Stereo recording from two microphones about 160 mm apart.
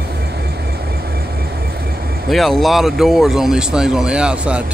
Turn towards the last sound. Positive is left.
turn(degrees=-5)  # may be behind; listen again after turning